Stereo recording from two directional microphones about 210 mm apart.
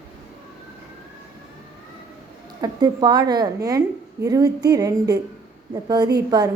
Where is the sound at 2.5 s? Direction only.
20° right (ahead or behind).